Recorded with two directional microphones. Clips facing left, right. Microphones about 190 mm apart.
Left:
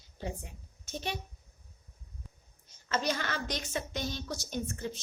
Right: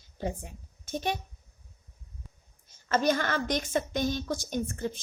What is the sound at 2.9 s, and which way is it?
A woman's voice, 50° right (ahead or behind).